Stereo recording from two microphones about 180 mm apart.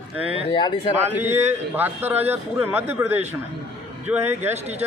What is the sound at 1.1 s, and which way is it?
A man's voice, 10° right (ahead or behind).